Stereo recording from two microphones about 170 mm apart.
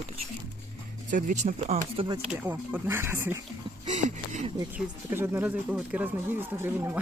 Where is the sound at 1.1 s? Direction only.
50° right (ahead or behind).